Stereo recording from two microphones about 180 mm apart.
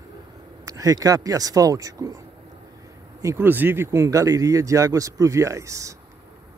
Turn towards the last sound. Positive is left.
turn(degrees=-15)  # may be behind; listen again after turning